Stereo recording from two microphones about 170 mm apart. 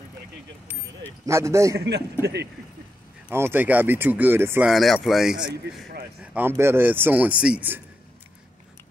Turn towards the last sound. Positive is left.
turn(degrees=-10)  # may be behind; listen again after turning